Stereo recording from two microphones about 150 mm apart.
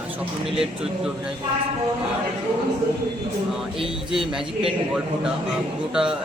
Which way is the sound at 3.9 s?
5° right (ahead or behind).